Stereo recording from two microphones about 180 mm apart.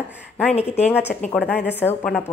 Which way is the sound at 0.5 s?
35° left (ahead or behind).